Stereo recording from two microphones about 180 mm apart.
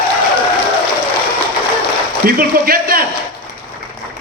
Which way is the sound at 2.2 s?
55° right (ahead or behind).